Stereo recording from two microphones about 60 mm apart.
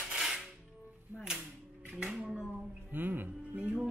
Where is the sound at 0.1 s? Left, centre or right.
Centre.